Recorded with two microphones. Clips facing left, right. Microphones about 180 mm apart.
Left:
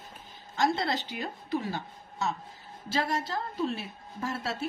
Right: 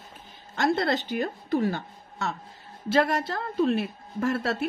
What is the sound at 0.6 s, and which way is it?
A woman's voice, 55° right (ahead or behind).